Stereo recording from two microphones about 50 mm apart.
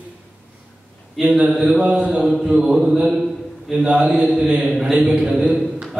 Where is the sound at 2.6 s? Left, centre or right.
Centre.